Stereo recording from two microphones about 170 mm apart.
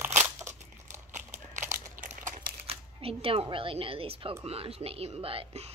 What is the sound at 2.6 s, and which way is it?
Speech, 35° right (ahead or behind).